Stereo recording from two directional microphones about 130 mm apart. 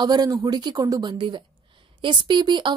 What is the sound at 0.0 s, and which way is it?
Speech, 30° right (ahead or behind).